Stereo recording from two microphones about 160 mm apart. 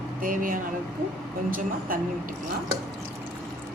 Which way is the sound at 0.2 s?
55° right (ahead or behind).